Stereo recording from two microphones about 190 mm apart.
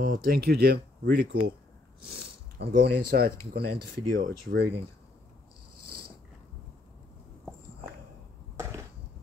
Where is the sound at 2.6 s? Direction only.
55° right (ahead or behind).